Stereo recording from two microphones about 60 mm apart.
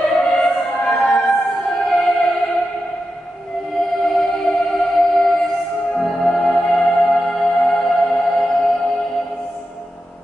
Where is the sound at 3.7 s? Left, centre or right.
Centre.